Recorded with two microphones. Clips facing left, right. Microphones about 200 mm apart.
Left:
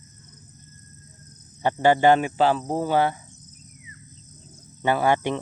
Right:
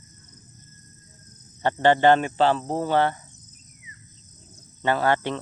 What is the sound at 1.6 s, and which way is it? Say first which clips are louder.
Speech: even; 10° left (ahead or behind).